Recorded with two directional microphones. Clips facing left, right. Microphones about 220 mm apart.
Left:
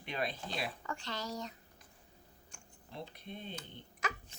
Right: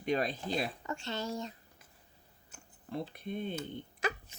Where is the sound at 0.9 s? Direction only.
25° right (ahead or behind).